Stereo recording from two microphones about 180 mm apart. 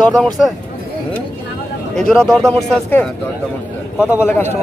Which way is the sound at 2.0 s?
5° left (ahead or behind).